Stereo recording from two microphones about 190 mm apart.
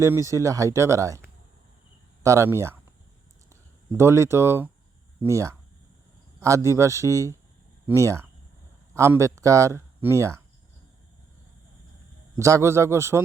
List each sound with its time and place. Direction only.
0.0 s speech: 15° right (ahead or behind)
2.2 s speech: 15° right (ahead or behind)
12.4 s speech: 15° right (ahead or behind)